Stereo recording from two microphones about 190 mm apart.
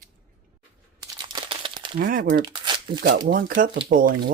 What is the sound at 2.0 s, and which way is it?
Speech, 45° right (ahead or behind).